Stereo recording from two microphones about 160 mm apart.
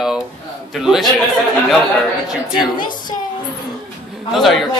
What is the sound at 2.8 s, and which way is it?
Speech, 30° left (ahead or behind).